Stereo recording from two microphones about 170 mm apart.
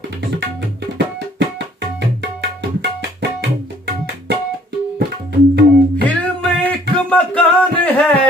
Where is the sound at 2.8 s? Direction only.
90° right.